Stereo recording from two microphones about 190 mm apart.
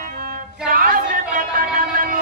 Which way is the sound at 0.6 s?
45° right (ahead or behind).